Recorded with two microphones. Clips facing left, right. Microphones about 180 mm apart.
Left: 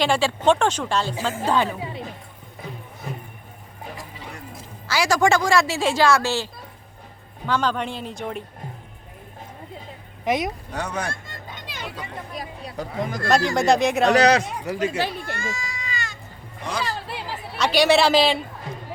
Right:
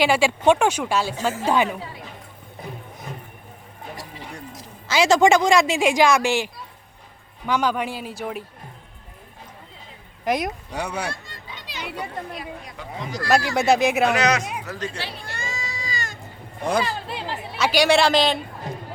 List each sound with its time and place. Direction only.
0.0 s speech: 10° right (ahead or behind)
4.9 s speech: 20° right (ahead or behind); by 8.4 s 5° right (ahead or behind)
10.2 s speech: centre (ahead or behind)
10.7 s speech: 10° right (ahead or behind)
11.1 s children playing: 50° left (ahead or behind)
12.4 s speech: 40° left (ahead or behind)
13.2 s speech: 5° right (ahead or behind)
14.1 s speech: 35° left (ahead or behind)
14.6 s speech: 15° left (ahead or behind)
14.9 s speech: 45° left (ahead or behind)
15.4 s baby cry: 20° right (ahead or behind)
17.1 s a man's voice: 5° left (ahead or behind)